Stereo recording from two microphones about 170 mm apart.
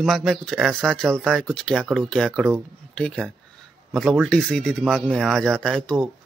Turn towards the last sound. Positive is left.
turn(degrees=5)  # may be behind; listen again after turning